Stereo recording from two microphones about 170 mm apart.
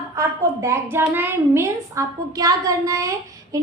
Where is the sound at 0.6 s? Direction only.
15° right (ahead or behind).